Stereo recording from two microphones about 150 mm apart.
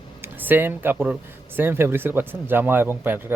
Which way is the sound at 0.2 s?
15° right (ahead or behind).